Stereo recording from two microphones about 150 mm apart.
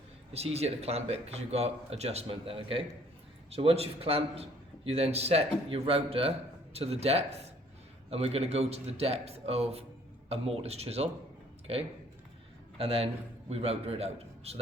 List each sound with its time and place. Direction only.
0.3 s a man's voice: 45° right (ahead or behind)
12.7 s a man's voice: 40° right (ahead or behind)